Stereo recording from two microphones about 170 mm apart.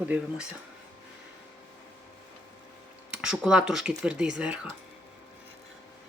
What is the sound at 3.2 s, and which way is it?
Speech, 5° right (ahead or behind).